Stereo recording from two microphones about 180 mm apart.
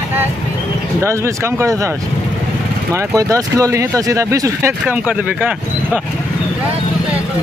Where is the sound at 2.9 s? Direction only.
20° right (ahead or behind).